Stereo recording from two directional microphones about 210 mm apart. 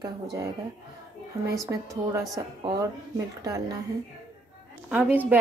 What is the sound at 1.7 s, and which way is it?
A woman's voice, 15° right (ahead or behind).